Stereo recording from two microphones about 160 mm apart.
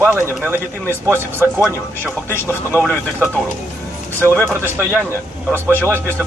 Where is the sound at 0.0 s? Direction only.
10° right (ahead or behind).